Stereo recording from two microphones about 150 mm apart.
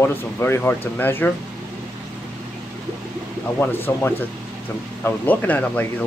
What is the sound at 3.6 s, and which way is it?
Speech, 15° left (ahead or behind).